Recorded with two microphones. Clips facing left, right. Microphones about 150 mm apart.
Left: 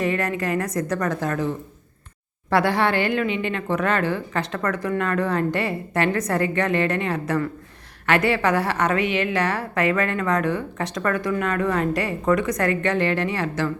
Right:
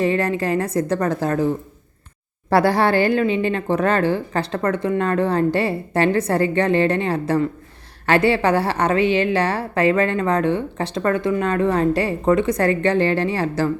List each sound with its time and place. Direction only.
0.0 s a woman's voice: 30° right (ahead or behind)